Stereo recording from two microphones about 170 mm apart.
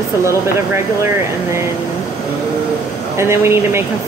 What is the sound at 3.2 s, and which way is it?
Speech, 15° right (ahead or behind).